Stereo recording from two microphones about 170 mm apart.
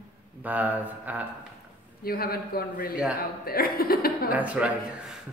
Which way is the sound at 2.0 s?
60° left (ahead or behind).